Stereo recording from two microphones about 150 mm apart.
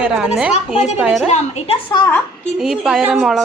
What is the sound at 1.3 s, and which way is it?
Speech, 45° left (ahead or behind).